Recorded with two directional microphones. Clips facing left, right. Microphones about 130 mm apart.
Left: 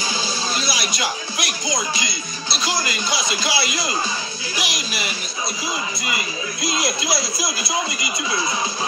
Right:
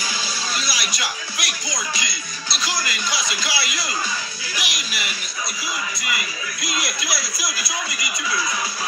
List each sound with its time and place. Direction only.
0.6 s speech: 25° left (ahead or behind)